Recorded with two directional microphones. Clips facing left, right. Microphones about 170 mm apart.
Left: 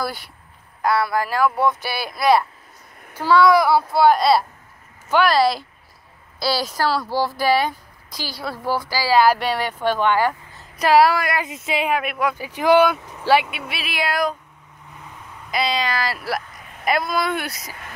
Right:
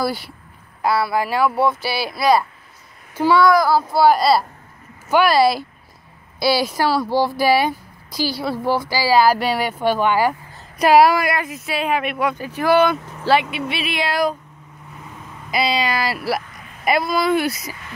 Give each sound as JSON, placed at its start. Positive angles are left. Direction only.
{"t": 0.8, "sound": "speech", "side_deg": -5}
{"t": 3.2, "sound": "speech", "side_deg": -10}
{"t": 11.4, "sound": "speech", "side_deg": 20}
{"t": 11.9, "sound": "speech", "side_deg": 0}
{"t": 12.4, "sound": "speech", "side_deg": 15}
{"t": 15.5, "sound": "speech", "side_deg": -5}